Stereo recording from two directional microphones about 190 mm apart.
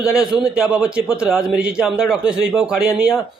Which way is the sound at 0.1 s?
5° right (ahead or behind).